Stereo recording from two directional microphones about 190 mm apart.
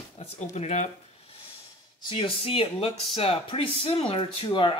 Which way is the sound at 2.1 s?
30° left (ahead or behind).